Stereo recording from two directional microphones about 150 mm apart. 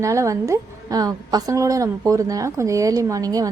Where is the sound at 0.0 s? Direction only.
20° right (ahead or behind).